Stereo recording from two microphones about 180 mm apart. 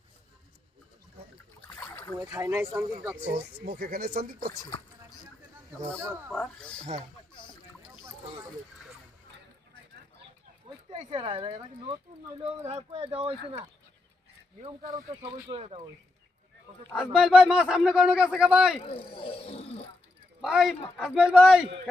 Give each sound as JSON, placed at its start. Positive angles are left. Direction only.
{"t": 1.7, "sound": "boat", "side_deg": 10}
{"t": 2.3, "sound": "speech", "side_deg": -15}
{"t": 3.6, "sound": "speech", "side_deg": -55}
{"t": 6.3, "sound": "speech", "side_deg": 5}
{"t": 10.8, "sound": "speech", "side_deg": -30}
{"t": 14.9, "sound": "speech", "side_deg": -25}
{"t": 16.9, "sound": "a man's voice", "side_deg": -5}
{"t": 18.8, "sound": "speech", "side_deg": 30}
{"t": 20.4, "sound": "a man's voice", "side_deg": -5}